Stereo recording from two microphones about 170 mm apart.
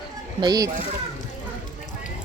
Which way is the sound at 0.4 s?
25° right (ahead or behind).